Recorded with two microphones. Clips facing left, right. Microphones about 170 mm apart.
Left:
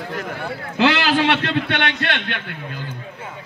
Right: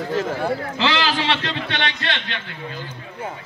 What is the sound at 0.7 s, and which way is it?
A man's voice, 60° left (ahead or behind).